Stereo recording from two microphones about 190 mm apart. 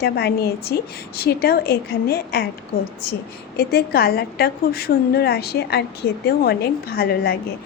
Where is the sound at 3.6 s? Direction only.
55° left (ahead or behind).